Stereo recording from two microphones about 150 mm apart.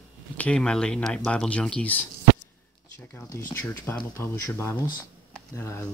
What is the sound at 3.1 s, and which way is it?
Speech, 15° left (ahead or behind).